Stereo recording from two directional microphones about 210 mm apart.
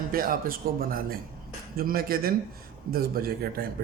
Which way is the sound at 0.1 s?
45° right (ahead or behind).